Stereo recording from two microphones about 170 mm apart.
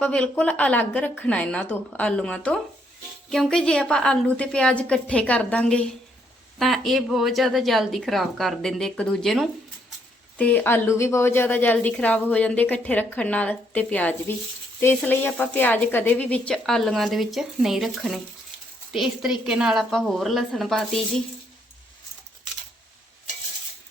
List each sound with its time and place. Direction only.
0.0 s a woman's voice: 5° left (ahead or behind)